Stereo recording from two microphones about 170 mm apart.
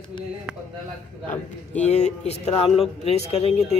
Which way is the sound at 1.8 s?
40° left (ahead or behind).